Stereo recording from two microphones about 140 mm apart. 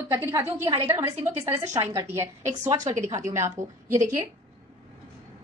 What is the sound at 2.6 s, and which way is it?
A woman's voice, 55° right (ahead or behind).